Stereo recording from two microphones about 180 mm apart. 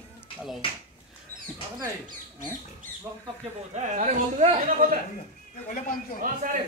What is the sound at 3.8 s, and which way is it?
Speech, 40° right (ahead or behind).